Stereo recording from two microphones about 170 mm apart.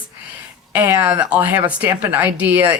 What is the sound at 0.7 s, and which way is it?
A woman's voice, 10° right (ahead or behind).